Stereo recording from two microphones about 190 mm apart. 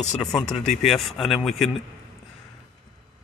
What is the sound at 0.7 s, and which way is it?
Speech, centre (ahead or behind).